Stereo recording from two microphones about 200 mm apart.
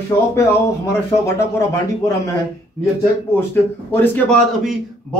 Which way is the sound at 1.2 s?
15° left (ahead or behind).